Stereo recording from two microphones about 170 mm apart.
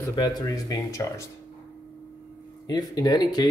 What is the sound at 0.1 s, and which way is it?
Speech, 25° left (ahead or behind).